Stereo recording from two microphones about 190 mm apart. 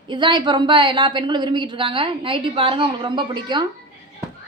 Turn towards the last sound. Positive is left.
turn(degrees=-25)  # may be behind; listen again after turning